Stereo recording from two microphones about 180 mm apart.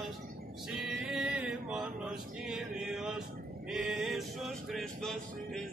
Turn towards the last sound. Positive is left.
turn(degrees=0)  # may be behind; listen again after turning